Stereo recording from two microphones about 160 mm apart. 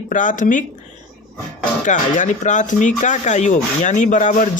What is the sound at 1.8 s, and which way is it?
Speech, 50° left (ahead or behind).